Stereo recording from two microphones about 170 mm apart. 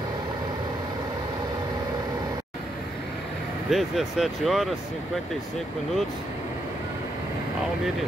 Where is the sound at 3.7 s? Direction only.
Centre (ahead or behind).